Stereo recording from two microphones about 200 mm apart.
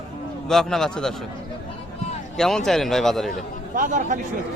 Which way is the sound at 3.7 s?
40° right (ahead or behind).